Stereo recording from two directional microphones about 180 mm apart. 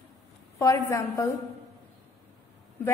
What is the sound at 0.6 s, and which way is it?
Speech, 15° left (ahead or behind).